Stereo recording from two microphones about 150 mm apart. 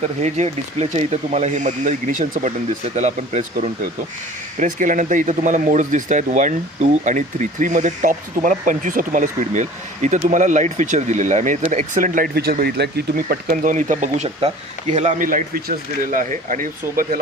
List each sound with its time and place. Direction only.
0.2 s speech: 45° right (ahead or behind); by 17.2 s 65° right (ahead or behind)